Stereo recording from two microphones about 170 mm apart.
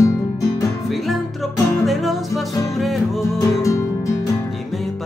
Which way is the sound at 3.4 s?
20° left (ahead or behind).